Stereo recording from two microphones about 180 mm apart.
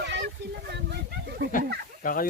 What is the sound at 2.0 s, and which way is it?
Speech, 50° left (ahead or behind).